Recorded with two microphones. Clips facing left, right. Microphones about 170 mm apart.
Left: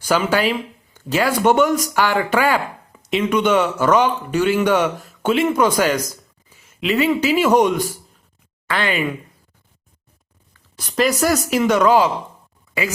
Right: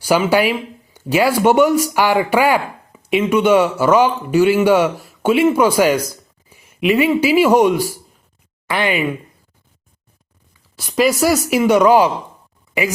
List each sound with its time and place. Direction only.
0.0 s speech: 10° right (ahead or behind)
10.5 s speech: 10° right (ahead or behind)